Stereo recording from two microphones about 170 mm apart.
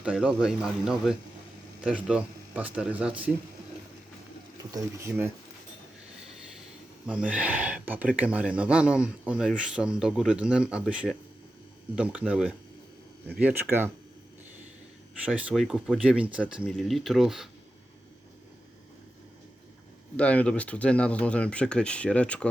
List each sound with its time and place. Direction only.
0.0 s speech: 5° right (ahead or behind)
4.7 s speech: 15° right (ahead or behind)
7.0 s speech: 5° right (ahead or behind)
15.2 s speech: 10° right (ahead or behind)
20.1 s speech: 10° left (ahead or behind)